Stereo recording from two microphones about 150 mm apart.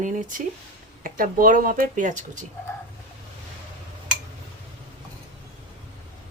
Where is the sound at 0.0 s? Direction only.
55° right (ahead or behind).